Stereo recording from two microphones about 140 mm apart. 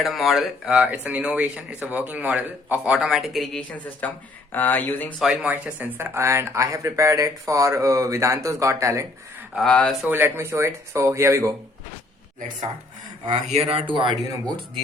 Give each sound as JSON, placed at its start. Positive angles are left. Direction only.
{"t": 0.0, "sound": "speech", "side_deg": 0}
{"t": 5.2, "sound": "speech", "side_deg": -5}
{"t": 9.6, "sound": "speech", "side_deg": 10}
{"t": 10.1, "sound": "speech", "side_deg": -15}
{"t": 13.5, "sound": "speech", "side_deg": -45}